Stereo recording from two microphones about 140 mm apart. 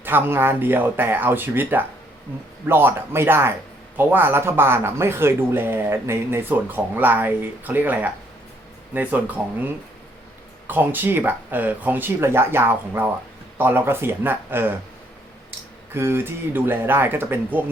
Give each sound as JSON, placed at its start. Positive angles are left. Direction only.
{"t": 0.0, "sound": "speech", "side_deg": -15}
{"t": 16.0, "sound": "speech", "side_deg": -15}